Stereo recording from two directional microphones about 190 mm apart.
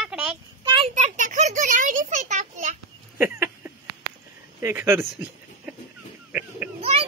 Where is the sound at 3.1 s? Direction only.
10° right (ahead or behind).